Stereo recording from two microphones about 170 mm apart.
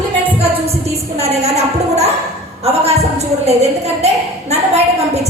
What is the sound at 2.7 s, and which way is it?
A woman's voice, 40° right (ahead or behind).